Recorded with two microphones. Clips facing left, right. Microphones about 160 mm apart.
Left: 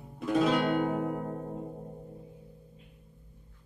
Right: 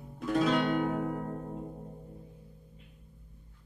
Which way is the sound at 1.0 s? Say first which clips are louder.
Left 1 dB; 20° left (ahead or behind).